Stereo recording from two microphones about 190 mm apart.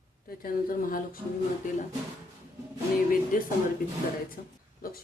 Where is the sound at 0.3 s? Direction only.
50° left (ahead or behind).